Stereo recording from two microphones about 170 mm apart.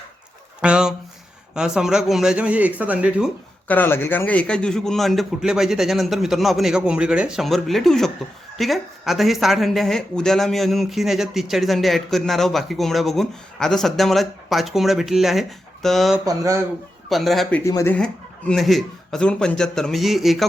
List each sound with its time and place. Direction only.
0.6 s speech: 5° right (ahead or behind)
3.7 s speech: 10° left (ahead or behind)
16.2 s speech: 20° right (ahead or behind)
17.1 s speech: centre (ahead or behind)
17.6 s speech: 20° left (ahead or behind)
17.9 s speech: 5° left (ahead or behind)